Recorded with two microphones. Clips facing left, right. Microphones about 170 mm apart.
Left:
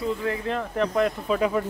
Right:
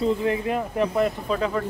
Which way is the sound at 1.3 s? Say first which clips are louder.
Left 4 dB; 5° left (ahead or behind).